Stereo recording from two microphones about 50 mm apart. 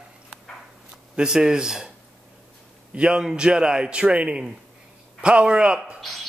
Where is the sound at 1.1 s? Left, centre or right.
Centre.